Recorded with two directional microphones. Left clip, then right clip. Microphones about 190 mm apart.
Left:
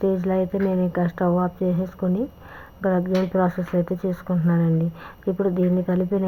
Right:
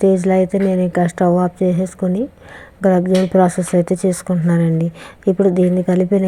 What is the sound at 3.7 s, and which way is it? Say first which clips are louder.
Speech: right 8 dB; 45° right (ahead or behind).